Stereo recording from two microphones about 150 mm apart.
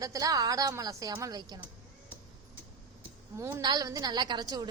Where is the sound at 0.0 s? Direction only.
25° right (ahead or behind).